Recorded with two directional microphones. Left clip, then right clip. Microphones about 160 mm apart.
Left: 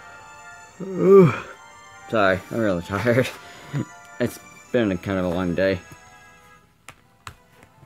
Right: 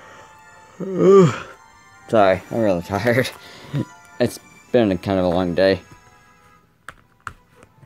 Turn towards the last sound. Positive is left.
turn(degrees=30)  # may be behind; listen again after turning